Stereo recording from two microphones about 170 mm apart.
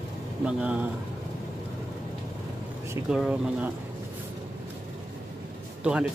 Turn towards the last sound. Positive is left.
turn(degrees=-5)  # may be behind; listen again after turning